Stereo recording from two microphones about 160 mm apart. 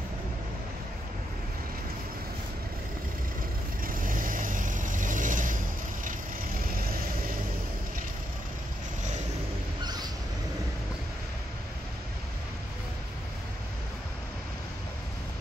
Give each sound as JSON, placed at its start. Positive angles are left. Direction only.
{"t": 3.8, "sound": "vehicle", "side_deg": -60}
{"t": 6.0, "sound": "vehicle", "side_deg": -65}